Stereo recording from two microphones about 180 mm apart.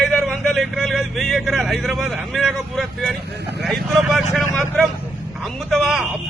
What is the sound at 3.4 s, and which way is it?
Speech, 70° right (ahead or behind).